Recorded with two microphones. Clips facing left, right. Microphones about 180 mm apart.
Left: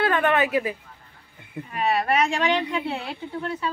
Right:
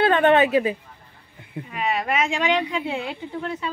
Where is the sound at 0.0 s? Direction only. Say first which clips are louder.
Right 5 dB; 25° right (ahead or behind).